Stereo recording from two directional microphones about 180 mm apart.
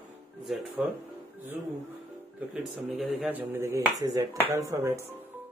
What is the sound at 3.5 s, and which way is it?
Dishes, 15° right (ahead or behind).